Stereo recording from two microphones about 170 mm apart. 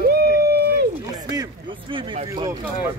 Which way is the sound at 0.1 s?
70° right (ahead or behind).